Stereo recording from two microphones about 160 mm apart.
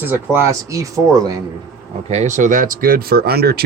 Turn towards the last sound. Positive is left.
turn(degrees=-80)